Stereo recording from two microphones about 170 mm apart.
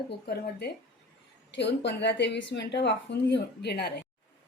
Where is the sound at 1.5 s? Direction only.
90° left; by 4.0 s 75° left (ahead or behind).